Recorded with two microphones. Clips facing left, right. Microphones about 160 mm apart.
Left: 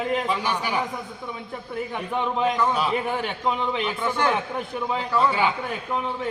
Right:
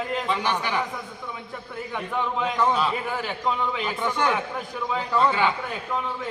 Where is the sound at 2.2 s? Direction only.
20° left (ahead or behind).